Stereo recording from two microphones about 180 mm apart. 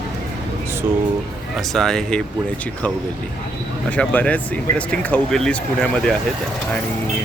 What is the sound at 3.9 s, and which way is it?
Speech, 10° left (ahead or behind).